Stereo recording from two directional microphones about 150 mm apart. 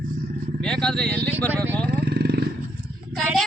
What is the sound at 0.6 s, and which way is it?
Speech, 5° left (ahead or behind).